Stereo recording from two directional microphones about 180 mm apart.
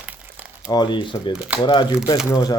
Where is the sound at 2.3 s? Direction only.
20° left (ahead or behind).